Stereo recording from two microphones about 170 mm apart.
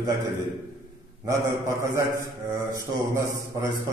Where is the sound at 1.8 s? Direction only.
20° right (ahead or behind).